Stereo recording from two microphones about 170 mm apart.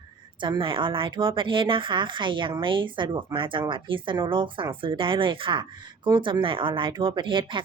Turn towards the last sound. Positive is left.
turn(degrees=-30)  # may be behind; listen again after turning